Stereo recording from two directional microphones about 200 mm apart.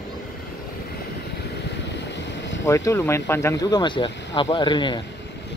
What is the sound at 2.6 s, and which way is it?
Speech, 15° left (ahead or behind).